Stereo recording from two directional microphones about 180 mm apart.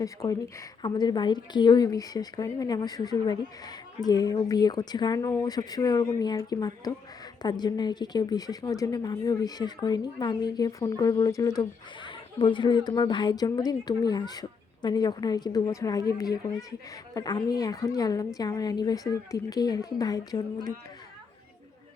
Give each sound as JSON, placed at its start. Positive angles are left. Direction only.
{"t": 0.0, "sound": "a woman's voice", "side_deg": 20}